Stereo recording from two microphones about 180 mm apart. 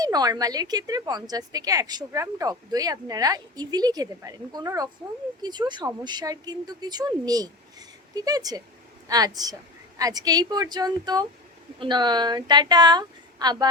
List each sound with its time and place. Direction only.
0.0 s a woman's voice: 20° right (ahead or behind)